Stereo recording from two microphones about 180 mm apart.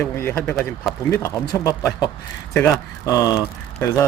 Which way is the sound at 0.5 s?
Centre (ahead or behind).